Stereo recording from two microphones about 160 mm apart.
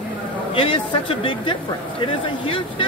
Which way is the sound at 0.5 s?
35° left (ahead or behind).